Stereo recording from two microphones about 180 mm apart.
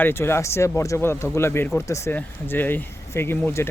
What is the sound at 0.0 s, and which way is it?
Speech, 15° left (ahead or behind).